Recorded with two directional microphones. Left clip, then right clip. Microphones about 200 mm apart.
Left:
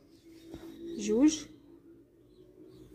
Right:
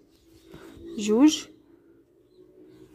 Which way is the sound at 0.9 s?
40° right (ahead or behind).